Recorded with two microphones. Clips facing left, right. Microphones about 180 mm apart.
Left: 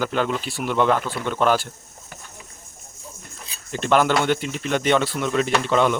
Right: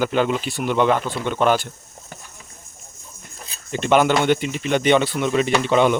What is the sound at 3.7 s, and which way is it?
Speech, centre (ahead or behind).